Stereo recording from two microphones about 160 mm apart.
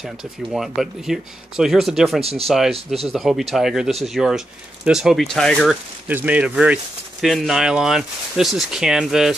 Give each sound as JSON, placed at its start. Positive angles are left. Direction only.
{"t": 0.0, "sound": "speech", "side_deg": 0}